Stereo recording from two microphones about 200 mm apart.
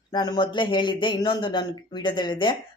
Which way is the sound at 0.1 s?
20° left (ahead or behind).